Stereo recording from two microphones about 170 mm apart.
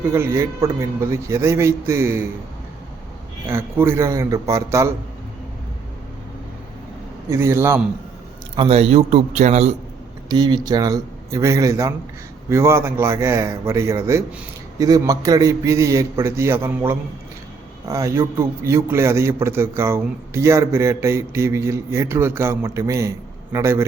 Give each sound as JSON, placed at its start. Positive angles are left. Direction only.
{"t": 0.0, "sound": "a man's voice", "side_deg": -15}
{"t": 3.4, "sound": "a man's voice", "side_deg": -15}
{"t": 7.3, "sound": "a man's voice", "side_deg": -15}
{"t": 8.5, "sound": "a man's voice", "side_deg": -35}
{"t": 10.2, "sound": "a man's voice", "side_deg": -25}